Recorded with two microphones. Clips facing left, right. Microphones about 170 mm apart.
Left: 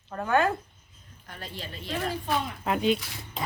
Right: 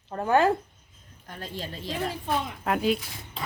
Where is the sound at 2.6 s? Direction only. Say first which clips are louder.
Even; centre (ahead or behind).